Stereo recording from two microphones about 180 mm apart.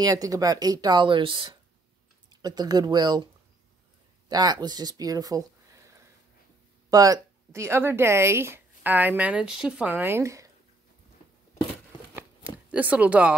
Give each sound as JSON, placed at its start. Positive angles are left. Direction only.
{"t": 0.0, "sound": "speech", "side_deg": -20}
{"t": 4.3, "sound": "speech", "side_deg": -20}
{"t": 6.9, "sound": "a woman's voice", "side_deg": -20}
{"t": 12.2, "sound": "chopping", "side_deg": -10}